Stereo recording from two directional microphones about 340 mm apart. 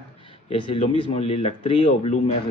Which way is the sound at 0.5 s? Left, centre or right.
Centre.